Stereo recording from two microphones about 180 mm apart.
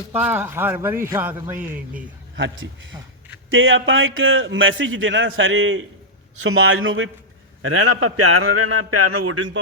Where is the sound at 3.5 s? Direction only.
90° right.